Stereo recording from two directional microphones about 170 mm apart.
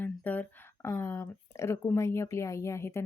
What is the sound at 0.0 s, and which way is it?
Speech, 10° left (ahead or behind).